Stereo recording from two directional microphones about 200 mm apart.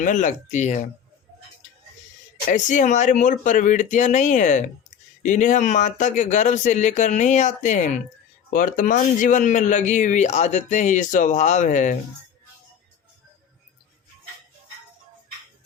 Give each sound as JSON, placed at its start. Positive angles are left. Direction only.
{"t": 0.0, "sound": "a man's voice", "side_deg": 40}
{"t": 2.5, "sound": "a man's voice", "side_deg": 40}